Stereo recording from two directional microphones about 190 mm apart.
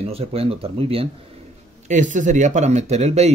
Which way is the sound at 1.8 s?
40° right (ahead or behind).